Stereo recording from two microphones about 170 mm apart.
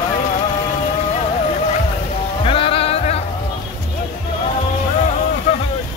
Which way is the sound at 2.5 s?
35° left (ahead or behind).